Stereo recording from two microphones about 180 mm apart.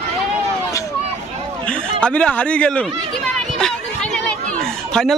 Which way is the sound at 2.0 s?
5° left (ahead or behind).